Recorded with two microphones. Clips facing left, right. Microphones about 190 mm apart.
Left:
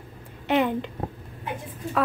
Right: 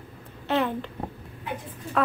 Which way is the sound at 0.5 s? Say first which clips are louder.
Left 3 dB; 15° left (ahead or behind).